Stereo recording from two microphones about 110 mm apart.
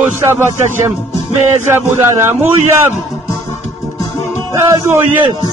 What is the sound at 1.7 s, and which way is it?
A man's voice, 20° right (ahead or behind).